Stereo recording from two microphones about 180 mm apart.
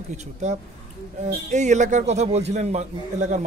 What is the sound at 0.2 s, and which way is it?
A man's voice, 40° right (ahead or behind).